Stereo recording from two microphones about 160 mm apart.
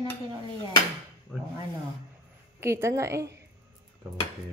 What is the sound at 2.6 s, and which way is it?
Speech, 15° right (ahead or behind).